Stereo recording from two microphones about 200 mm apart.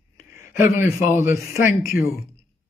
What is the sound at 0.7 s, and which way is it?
Speech, 10° right (ahead or behind).